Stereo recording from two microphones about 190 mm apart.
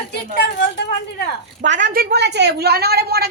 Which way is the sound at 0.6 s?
60° left (ahead or behind).